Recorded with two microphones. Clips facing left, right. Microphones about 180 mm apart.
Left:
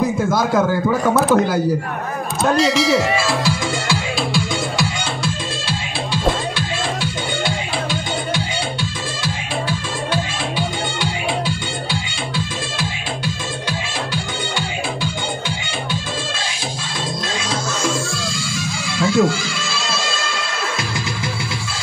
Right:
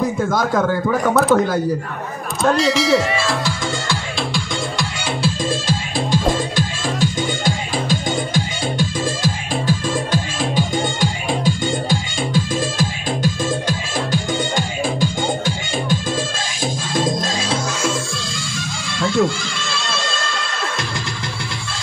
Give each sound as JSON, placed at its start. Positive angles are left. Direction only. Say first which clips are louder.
{"t": 0.3, "sound": "speech", "louder": "left 1 dB", "side_deg": 5}
{"t": 6.5, "sound": "music", "louder": "right 1 dB", "side_deg": -45}
{"t": 18.9, "sound": "music", "louder": "left 2 dB", "side_deg": 5}